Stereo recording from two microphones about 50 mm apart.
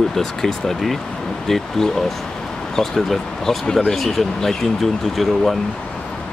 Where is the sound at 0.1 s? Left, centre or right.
Centre.